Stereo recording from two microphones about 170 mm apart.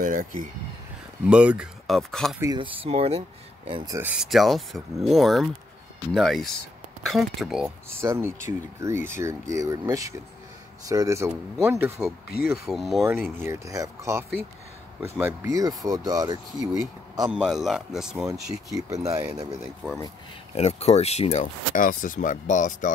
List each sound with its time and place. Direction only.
0.0 s a sound: 50° right (ahead or behind)
1.2 s speech: 5° right (ahead or behind)
2.4 s speech: 25° right (ahead or behind)
3.9 s speech: 10° right (ahead or behind)
8.0 s speech: 15° right (ahead or behind)
13.0 s speech: 10° right (ahead or behind)
17.3 s speech: 5° right (ahead or behind)
18.2 s speech: 20° right (ahead or behind)
19.8 s speech: 5° right (ahead or behind)
20.5 s speech: 40° left (ahead or behind)